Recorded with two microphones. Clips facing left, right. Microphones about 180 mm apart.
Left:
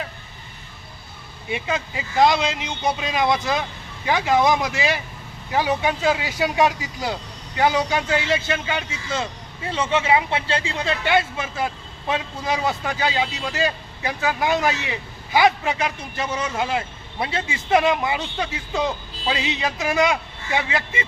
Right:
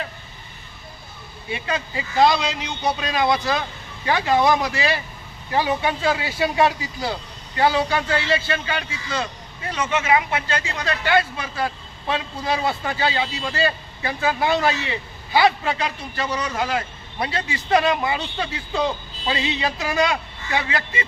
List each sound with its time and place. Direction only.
1.7 s speech: 15° left (ahead or behind)